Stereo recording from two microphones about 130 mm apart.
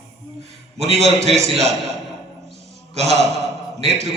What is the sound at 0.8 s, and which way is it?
Speech, 55° right (ahead or behind).